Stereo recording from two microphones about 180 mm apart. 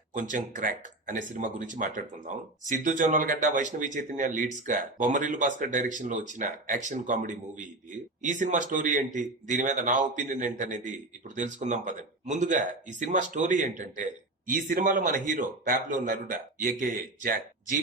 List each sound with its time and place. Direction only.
0.2 s speech: 45° right (ahead or behind)